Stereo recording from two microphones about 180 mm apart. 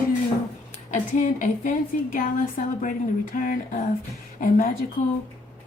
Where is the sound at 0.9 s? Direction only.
45° left (ahead or behind).